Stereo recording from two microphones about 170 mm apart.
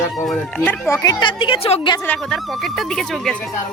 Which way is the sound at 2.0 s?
5° left (ahead or behind).